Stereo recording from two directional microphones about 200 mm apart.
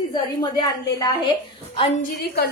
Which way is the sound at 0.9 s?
15° left (ahead or behind).